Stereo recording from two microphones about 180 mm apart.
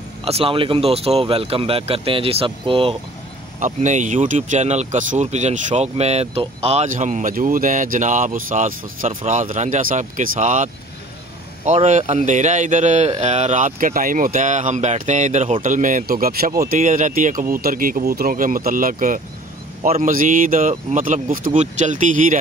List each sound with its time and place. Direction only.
0.2 s speech: 35° right (ahead or behind)
3.5 s speech: 40° right (ahead or behind)